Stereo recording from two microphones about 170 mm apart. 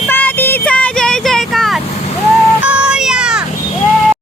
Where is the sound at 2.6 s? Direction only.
5° right (ahead or behind).